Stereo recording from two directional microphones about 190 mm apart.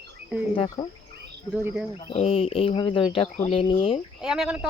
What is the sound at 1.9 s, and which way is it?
Speech, 30° left (ahead or behind).